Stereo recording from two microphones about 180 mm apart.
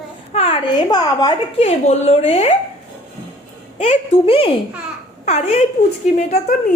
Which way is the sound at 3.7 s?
35° left (ahead or behind).